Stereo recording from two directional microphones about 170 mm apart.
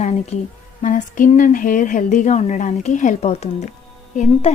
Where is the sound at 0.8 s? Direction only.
50° left (ahead or behind).